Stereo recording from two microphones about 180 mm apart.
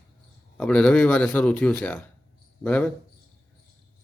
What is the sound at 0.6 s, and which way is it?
Speech, 5° left (ahead or behind).